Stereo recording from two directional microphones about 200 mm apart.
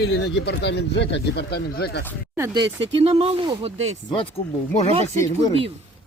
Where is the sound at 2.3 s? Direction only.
15° right (ahead or behind).